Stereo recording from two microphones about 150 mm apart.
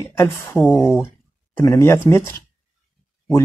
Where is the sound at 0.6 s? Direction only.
Centre (ahead or behind).